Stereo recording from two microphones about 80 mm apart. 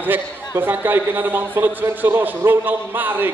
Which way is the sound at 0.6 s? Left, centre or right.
Right.